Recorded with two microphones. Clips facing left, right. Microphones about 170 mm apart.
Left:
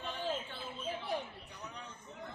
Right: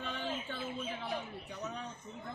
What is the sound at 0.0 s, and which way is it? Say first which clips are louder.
Bird: right 1 dB; 65° right (ahead or behind).